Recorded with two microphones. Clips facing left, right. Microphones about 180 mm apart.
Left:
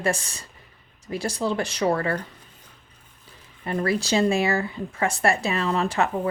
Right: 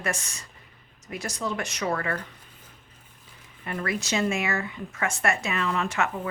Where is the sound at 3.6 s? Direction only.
30° left (ahead or behind).